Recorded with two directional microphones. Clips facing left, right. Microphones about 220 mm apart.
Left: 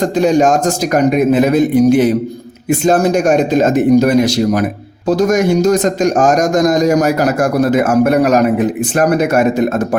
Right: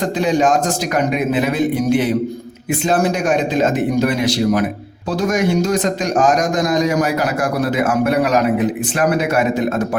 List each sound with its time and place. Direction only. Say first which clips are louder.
0.2 s a man's voice: left 4 dB; 45° left (ahead or behind)